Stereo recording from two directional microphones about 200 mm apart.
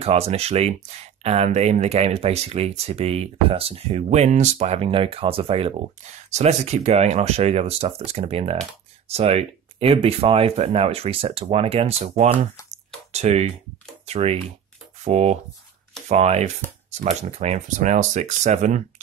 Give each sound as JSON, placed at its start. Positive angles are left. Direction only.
{"t": 0.0, "sound": "speech", "side_deg": -30}